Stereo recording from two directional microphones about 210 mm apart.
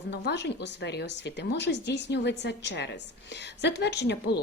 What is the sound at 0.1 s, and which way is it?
Speech, 55° left (ahead or behind).